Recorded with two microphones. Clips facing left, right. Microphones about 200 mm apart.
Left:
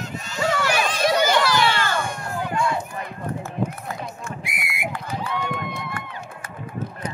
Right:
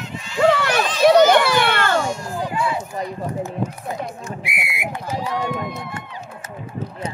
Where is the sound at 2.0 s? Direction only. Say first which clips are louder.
Right 5 dB; 60° left (ahead or behind).